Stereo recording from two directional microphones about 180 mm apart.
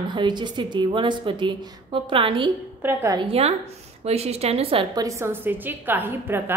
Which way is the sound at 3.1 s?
30° right (ahead or behind).